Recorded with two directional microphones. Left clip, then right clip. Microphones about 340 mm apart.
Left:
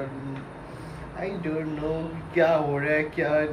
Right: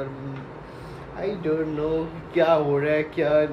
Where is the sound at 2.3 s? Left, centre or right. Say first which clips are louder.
Right 2 dB; centre.